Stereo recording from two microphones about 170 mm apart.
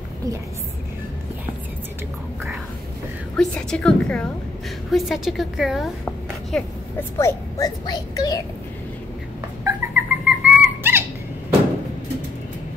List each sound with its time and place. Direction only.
3.3 s a woman's voice: 5° left (ahead or behind)
7.2 s a child's voice: 15° left (ahead or behind)
9.7 s dog: 10° right (ahead or behind)